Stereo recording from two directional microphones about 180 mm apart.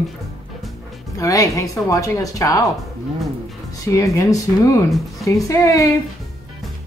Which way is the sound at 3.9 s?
20° left (ahead or behind).